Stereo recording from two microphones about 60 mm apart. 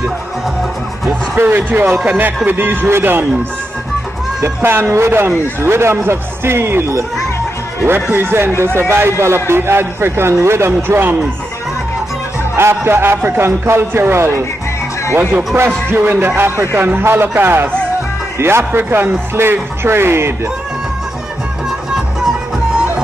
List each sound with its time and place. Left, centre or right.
1.3 s speech: right
4.6 s speech: right
7.8 s speech: right
12.5 s speech: right